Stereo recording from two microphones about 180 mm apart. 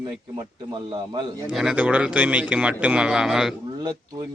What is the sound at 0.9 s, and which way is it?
Speech, 25° right (ahead or behind).